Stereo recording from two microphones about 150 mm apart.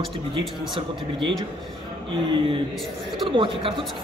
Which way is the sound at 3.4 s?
35° right (ahead or behind).